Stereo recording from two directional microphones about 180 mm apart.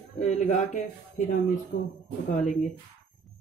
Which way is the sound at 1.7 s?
70° left (ahead or behind).